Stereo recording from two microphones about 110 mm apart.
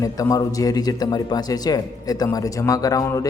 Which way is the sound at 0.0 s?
30° left (ahead or behind).